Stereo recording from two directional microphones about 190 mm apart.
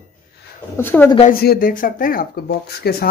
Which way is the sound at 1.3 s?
50° left (ahead or behind).